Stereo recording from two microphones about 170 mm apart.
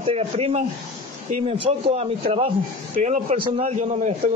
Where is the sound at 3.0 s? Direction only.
45° right (ahead or behind).